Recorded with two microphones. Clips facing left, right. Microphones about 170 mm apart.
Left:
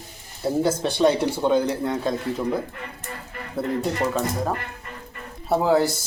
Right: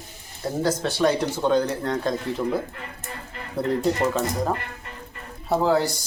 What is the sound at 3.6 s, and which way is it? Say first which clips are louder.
Speech: right 2 dB; centre (ahead or behind).